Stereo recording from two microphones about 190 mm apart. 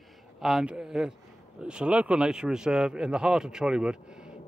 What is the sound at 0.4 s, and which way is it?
Speech, centre (ahead or behind).